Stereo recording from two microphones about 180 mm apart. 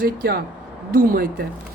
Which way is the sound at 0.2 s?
55° right (ahead or behind).